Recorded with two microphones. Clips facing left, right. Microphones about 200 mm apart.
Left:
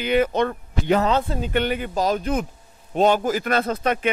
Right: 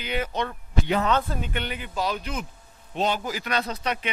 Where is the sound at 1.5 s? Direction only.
50° left (ahead or behind).